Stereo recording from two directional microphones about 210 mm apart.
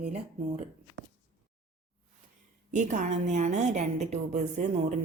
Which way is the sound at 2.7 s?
35° right (ahead or behind).